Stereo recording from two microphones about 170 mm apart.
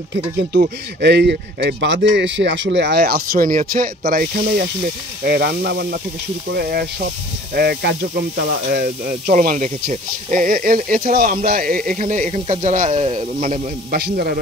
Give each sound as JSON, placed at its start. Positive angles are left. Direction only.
{"t": 0.1, "sound": "a man's voice", "side_deg": -75}
{"t": 13.9, "sound": "a man's voice", "side_deg": -65}